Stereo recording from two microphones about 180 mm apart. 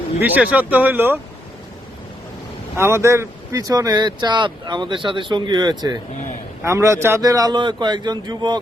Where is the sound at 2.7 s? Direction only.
15° right (ahead or behind).